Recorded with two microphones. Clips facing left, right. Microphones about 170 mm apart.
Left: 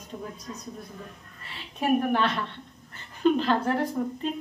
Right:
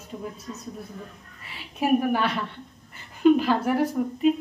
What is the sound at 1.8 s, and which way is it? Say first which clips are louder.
A woman's voice: right 2 dB; 10° right (ahead or behind).